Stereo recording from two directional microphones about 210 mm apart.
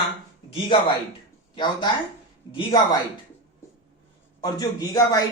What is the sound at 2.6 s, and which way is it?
Speech, 20° left (ahead or behind).